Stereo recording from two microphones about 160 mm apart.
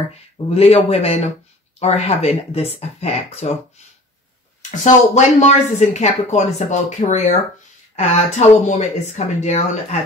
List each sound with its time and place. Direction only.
0.6 s speech: 40° left (ahead or behind)
4.6 s speech: 50° left (ahead or behind)